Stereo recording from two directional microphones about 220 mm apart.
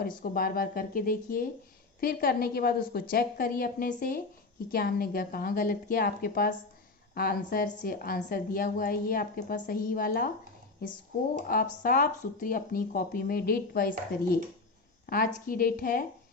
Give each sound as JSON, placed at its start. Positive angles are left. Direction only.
{"t": 0.2, "sound": "a woman's voice", "side_deg": 40}